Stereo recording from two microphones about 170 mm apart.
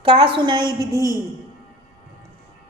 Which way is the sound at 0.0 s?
30° right (ahead or behind).